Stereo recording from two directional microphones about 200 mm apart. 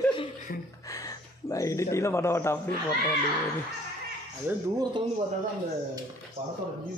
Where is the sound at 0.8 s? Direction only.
15° left (ahead or behind).